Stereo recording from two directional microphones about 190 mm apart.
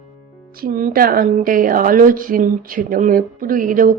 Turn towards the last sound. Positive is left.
turn(degrees=-45)  # may be behind; listen again after turning